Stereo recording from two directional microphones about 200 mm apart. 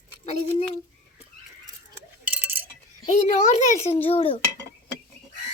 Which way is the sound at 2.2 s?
10° right (ahead or behind).